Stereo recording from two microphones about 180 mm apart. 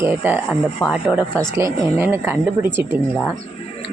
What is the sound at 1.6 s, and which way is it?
A woman's voice, 15° right (ahead or behind).